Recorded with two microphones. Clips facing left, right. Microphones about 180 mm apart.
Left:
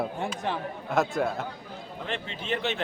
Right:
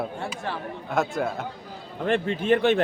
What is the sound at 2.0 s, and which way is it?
Speech, 50° right (ahead or behind).